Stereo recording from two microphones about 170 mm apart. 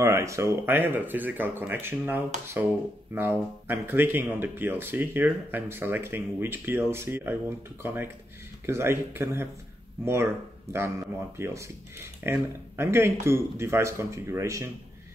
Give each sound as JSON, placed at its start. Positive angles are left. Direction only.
{"t": 0.0, "sound": "speech", "side_deg": -15}